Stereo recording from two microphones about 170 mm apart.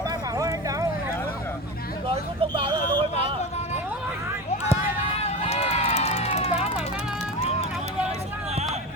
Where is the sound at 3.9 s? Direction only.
15° right (ahead or behind).